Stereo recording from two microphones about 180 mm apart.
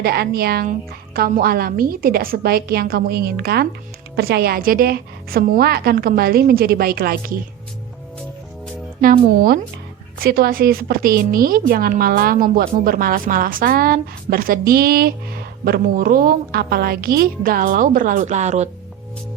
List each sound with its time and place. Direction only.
0.0 s a woman's voice: 60° right (ahead or behind)
9.0 s a woman's voice: 50° right (ahead or behind)